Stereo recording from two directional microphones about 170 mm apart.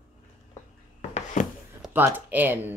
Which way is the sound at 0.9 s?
40° left (ahead or behind).